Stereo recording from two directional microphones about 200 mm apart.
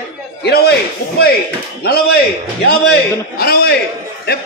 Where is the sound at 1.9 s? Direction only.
50° left (ahead or behind).